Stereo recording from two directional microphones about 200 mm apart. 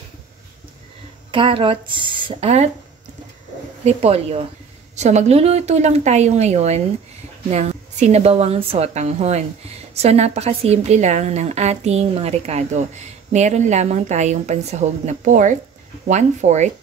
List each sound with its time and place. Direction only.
1.3 s a woman's voice: 25° right (ahead or behind)
3.8 s a woman's voice: 30° right (ahead or behind)